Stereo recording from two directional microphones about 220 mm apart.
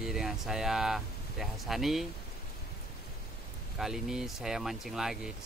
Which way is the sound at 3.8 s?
Centre (ahead or behind).